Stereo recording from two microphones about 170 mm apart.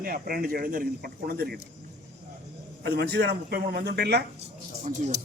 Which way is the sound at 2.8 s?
75° right (ahead or behind).